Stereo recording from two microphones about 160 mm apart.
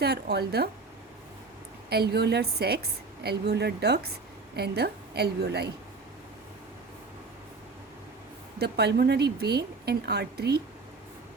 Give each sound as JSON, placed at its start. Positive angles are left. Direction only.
{"t": 0.0, "sound": "speech", "side_deg": -90}
{"t": 1.9, "sound": "a woman's voice", "side_deg": -85}
{"t": 8.5, "sound": "a woman's voice", "side_deg": -90}